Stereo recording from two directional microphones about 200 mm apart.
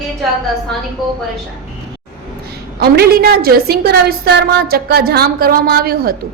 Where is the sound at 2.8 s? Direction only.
50° right (ahead or behind).